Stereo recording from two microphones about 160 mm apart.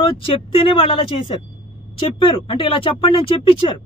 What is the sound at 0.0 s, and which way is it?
Speech, 35° left (ahead or behind).